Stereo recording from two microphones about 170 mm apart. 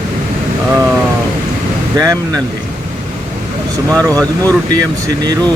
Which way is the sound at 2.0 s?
20° right (ahead or behind).